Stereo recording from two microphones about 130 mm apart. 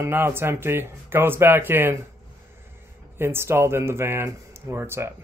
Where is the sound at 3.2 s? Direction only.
20° right (ahead or behind).